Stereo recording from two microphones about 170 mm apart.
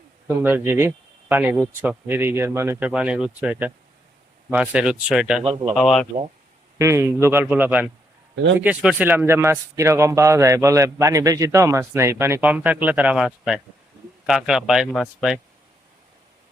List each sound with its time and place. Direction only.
0.3 s speech: 15° right (ahead or behind)
5.4 s speech: 35° right (ahead or behind)
5.7 s speech: 5° left (ahead or behind)
6.7 s speech: 15° right (ahead or behind); by 15.4 s centre (ahead or behind)